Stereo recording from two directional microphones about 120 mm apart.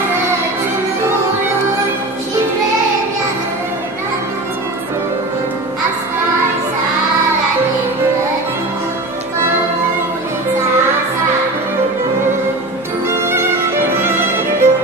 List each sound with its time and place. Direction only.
13.1 s music: 20° right (ahead or behind)